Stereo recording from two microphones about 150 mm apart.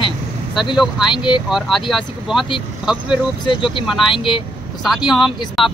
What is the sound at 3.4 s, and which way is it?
Speech, 35° left (ahead or behind).